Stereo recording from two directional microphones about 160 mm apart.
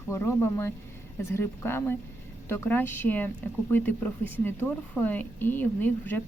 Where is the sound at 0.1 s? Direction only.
15° left (ahead or behind).